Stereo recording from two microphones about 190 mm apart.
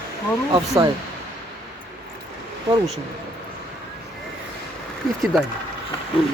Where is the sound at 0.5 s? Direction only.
20° right (ahead or behind).